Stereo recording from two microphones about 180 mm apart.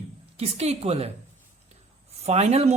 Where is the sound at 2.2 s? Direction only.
35° right (ahead or behind).